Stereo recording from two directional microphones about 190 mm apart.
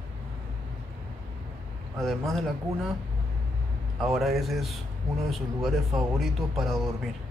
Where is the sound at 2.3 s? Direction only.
Centre (ahead or behind).